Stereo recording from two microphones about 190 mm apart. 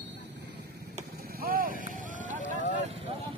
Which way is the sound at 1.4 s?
50° right (ahead or behind).